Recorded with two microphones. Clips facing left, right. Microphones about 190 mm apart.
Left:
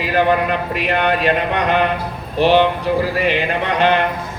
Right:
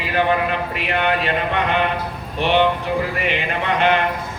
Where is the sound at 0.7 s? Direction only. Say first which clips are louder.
Left 4 dB; 40° left (ahead or behind).